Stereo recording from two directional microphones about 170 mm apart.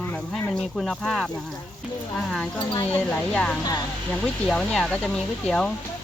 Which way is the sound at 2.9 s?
5° left (ahead or behind).